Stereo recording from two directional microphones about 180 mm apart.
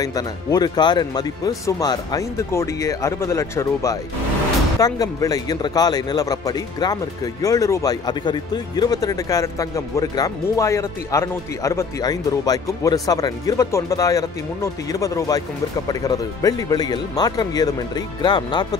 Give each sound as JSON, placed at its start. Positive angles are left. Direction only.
{"t": 0.0, "sound": "speech", "side_deg": 20}